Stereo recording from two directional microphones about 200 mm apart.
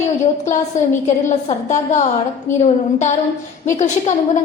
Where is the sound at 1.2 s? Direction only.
35° left (ahead or behind).